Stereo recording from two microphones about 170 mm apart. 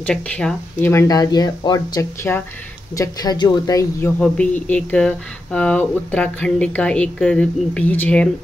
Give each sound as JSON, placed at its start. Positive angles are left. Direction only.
{"t": 0.0, "sound": "speech", "side_deg": 5}
{"t": 4.2, "sound": "speech", "side_deg": 10}